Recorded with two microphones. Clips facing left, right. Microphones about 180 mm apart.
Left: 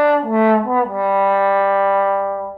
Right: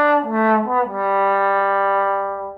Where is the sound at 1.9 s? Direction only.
15° left (ahead or behind).